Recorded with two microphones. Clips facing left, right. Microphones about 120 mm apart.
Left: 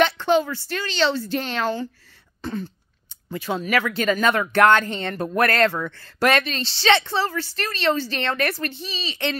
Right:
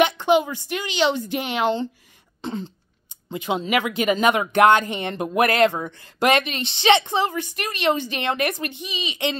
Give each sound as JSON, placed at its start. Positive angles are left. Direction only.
{"t": 0.0, "sound": "speech", "side_deg": -15}
{"t": 2.4, "sound": "throat clearing", "side_deg": -20}
{"t": 3.3, "sound": "speech", "side_deg": -20}